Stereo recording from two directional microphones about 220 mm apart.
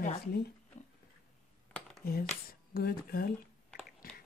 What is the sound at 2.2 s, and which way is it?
Speech, 40° left (ahead or behind).